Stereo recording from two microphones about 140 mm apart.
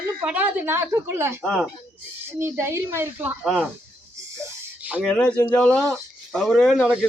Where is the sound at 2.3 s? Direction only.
20° right (ahead or behind).